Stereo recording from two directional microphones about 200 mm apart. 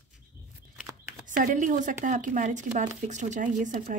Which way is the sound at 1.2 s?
40° right (ahead or behind).